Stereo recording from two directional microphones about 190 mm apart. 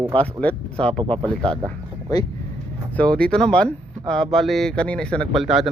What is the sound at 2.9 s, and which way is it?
Speech, 5° left (ahead or behind).